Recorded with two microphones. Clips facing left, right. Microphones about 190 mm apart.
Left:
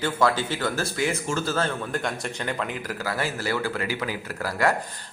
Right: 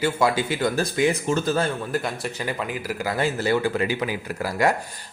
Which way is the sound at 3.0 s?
20° right (ahead or behind).